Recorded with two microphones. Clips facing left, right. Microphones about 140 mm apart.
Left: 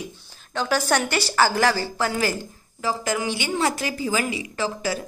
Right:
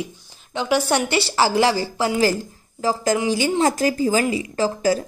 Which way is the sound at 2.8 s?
40° right (ahead or behind).